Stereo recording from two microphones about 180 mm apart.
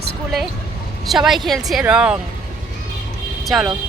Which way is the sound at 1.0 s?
Centre (ahead or behind).